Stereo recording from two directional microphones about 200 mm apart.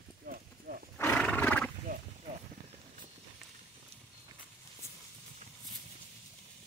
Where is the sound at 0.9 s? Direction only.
10° left (ahead or behind).